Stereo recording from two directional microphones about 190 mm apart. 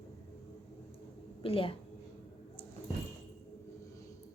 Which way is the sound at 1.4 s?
30° left (ahead or behind).